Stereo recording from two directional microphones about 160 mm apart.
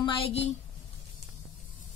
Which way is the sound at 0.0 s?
35° left (ahead or behind).